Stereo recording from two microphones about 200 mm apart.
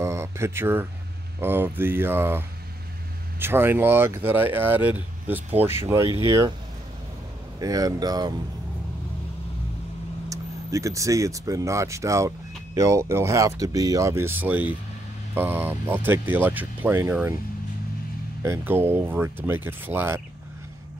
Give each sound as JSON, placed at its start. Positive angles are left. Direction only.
{"t": 0.0, "sound": "a sound", "side_deg": -15}
{"t": 1.4, "sound": "speech", "side_deg": -10}
{"t": 7.5, "sound": "speech", "side_deg": -15}
{"t": 10.3, "sound": "speech", "side_deg": -15}
{"t": 18.4, "sound": "speech", "side_deg": -10}